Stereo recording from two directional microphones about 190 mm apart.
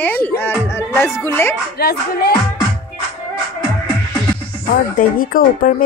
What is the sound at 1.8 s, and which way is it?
Speech, 55° left (ahead or behind).